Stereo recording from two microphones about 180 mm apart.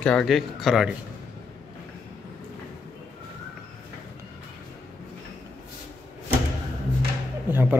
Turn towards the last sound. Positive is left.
turn(degrees=-10)  # may be behind; listen again after turning